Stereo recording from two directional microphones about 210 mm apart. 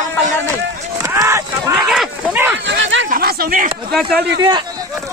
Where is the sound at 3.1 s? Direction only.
45° right (ahead or behind).